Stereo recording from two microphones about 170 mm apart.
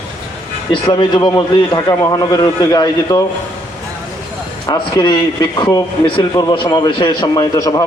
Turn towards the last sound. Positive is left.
turn(degrees=20)  # may be behind; listen again after turning